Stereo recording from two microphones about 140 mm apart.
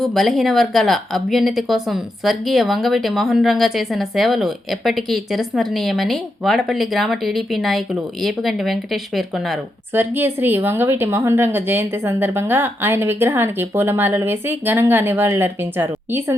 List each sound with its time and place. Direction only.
0.0 s speech: centre (ahead or behind)
9.9 s speech: 15° right (ahead or behind)